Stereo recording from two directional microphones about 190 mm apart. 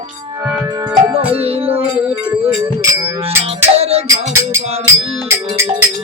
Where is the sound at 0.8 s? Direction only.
25° right (ahead or behind).